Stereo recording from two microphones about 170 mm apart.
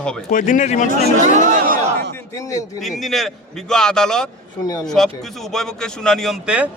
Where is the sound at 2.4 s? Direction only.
20° left (ahead or behind).